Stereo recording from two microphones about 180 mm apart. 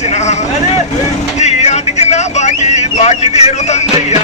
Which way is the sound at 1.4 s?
40° left (ahead or behind).